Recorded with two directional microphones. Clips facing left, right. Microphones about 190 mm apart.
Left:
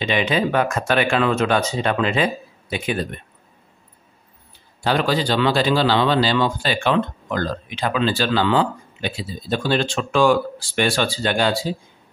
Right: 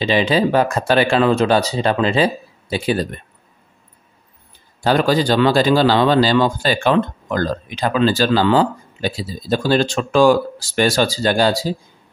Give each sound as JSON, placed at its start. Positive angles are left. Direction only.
{"t": 0.0, "sound": "a man's voice", "side_deg": -35}
{"t": 4.8, "sound": "a man's voice", "side_deg": -40}